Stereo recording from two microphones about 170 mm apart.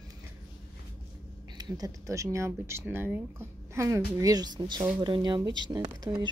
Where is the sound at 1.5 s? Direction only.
25° right (ahead or behind).